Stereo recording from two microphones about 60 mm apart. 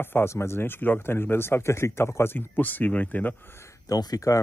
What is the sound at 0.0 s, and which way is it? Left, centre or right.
Speech, left.